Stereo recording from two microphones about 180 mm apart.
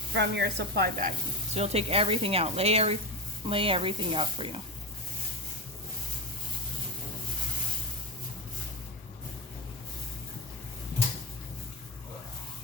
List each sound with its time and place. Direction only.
0.1 s speech: 70° right (ahead or behind)
1.5 s speech: 35° right (ahead or behind)